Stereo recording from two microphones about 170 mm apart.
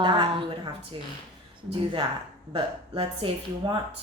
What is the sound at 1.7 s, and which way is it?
A woman's voice, 30° right (ahead or behind).